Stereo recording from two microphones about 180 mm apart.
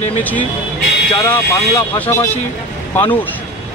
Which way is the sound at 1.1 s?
15° left (ahead or behind).